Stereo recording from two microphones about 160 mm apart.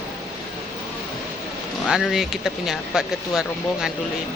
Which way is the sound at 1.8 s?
Centre (ahead or behind).